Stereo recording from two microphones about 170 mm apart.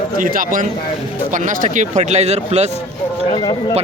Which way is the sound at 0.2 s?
55° right (ahead or behind).